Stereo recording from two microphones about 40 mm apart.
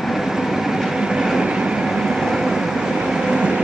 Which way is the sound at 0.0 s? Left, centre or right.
Centre.